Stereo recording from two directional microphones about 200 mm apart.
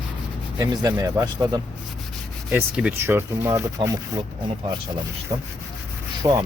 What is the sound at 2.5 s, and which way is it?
Speech, 5° right (ahead or behind).